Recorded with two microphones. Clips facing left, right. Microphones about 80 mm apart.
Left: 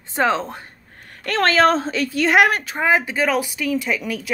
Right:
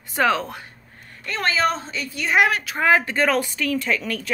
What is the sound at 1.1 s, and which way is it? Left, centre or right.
Speech, left.